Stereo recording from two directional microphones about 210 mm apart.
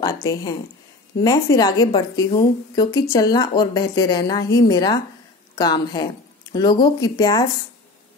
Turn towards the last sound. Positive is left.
turn(degrees=20)  # may be behind; listen again after turning